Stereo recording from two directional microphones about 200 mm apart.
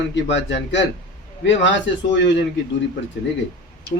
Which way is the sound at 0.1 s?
65° left (ahead or behind).